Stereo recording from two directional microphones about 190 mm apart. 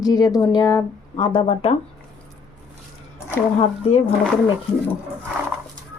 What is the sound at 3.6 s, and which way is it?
Speech, 30° left (ahead or behind).